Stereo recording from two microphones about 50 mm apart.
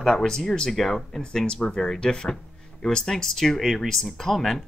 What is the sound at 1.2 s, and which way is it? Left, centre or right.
Speech, centre.